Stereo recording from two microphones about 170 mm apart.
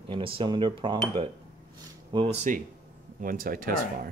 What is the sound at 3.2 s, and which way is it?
Speech, 55° right (ahead or behind).